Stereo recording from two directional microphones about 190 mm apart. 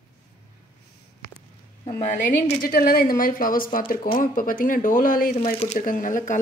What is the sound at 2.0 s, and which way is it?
Speech, 35° left (ahead or behind).